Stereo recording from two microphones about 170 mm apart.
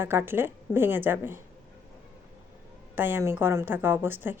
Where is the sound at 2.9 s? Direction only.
10° right (ahead or behind).